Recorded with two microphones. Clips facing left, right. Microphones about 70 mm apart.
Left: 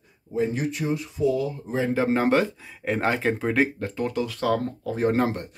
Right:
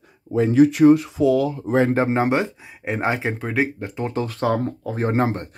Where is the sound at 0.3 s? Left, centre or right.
Right.